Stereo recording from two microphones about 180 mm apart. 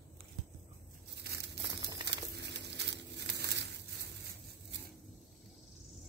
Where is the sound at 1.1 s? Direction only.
65° right (ahead or behind).